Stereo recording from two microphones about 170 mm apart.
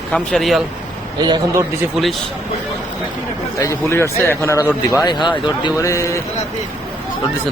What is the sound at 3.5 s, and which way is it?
A man's voice, 20° left (ahead or behind).